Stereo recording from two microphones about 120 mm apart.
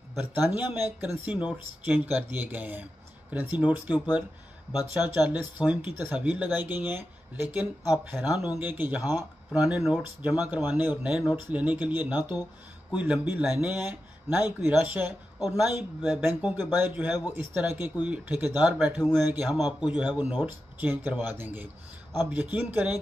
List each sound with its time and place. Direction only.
0.2 s speech: 15° right (ahead or behind)